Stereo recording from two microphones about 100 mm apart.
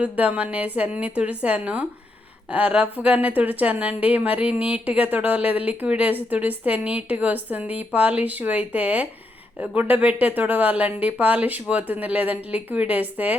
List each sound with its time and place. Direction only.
0.0 s speech: 15° right (ahead or behind)